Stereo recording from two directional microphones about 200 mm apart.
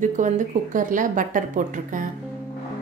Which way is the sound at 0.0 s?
40° right (ahead or behind).